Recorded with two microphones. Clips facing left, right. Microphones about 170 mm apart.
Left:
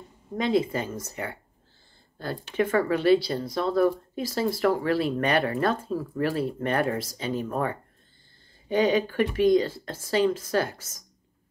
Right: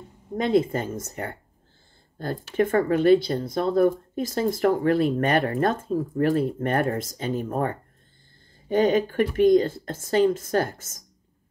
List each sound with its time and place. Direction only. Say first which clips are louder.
0.6 s speech: right 3 dB; 50° right (ahead or behind)
8.6 s speech: right 2 dB; 50° right (ahead or behind)